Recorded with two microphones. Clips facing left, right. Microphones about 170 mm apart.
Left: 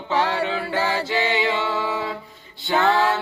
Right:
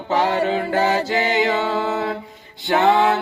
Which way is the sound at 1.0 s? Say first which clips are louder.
Right 3 dB; 40° right (ahead or behind).